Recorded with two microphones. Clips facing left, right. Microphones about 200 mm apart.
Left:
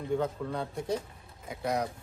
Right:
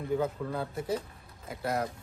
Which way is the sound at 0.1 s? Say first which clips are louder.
Even; 5° right (ahead or behind).